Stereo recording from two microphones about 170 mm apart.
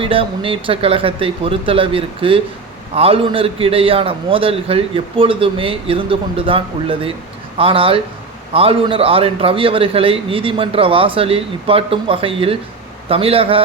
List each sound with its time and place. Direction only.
0.0 s a man's voice: 30° right (ahead or behind)